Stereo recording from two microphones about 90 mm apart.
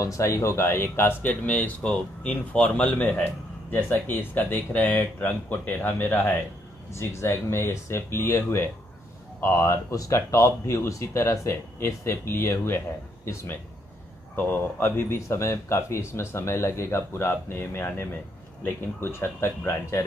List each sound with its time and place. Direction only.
0.0 s speech: 35° left (ahead or behind)